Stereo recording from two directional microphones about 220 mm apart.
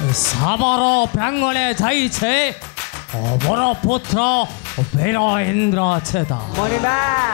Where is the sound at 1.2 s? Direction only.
15° left (ahead or behind).